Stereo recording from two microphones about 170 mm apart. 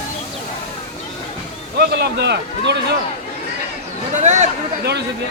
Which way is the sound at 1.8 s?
80° right.